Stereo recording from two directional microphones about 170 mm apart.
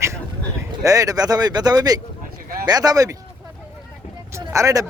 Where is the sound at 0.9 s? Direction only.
20° right (ahead or behind).